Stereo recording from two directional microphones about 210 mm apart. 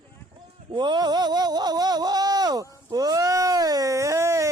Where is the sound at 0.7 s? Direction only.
20° right (ahead or behind).